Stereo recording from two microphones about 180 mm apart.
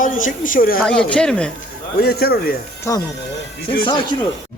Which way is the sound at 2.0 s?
60° left (ahead or behind).